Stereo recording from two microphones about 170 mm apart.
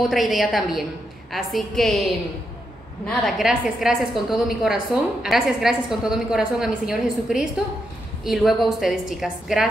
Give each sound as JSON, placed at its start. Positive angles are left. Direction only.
{"t": 0.1, "sound": "a woman's voice", "side_deg": 0}